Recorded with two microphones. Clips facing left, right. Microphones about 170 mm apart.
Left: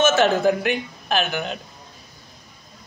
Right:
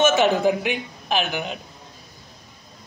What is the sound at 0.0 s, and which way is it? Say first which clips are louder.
A woman's voice: even; 15° right (ahead or behind).